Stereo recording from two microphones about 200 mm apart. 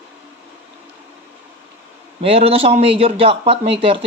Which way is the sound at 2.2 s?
30° right (ahead or behind).